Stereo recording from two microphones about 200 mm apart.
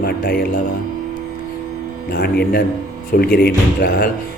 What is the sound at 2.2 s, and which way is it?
A man's voice, 50° left (ahead or behind).